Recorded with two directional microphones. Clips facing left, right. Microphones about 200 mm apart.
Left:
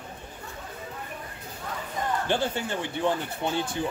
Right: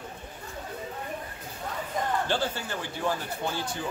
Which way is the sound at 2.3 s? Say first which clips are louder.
Left 3 dB; 20° left (ahead or behind).